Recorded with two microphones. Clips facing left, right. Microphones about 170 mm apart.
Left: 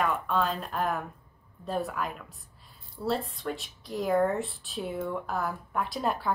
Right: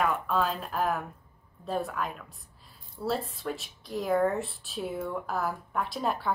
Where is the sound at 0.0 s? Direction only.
Centre (ahead or behind).